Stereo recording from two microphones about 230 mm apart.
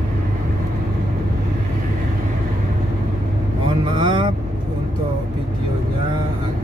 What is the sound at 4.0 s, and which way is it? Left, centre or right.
Vehicle, right.